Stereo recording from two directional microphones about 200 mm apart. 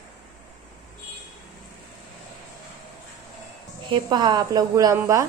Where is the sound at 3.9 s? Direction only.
20° right (ahead or behind).